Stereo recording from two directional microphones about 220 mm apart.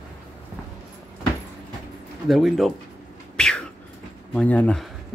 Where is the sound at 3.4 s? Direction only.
5° left (ahead or behind).